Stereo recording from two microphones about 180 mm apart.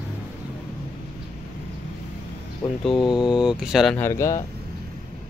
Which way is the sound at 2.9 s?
25° left (ahead or behind).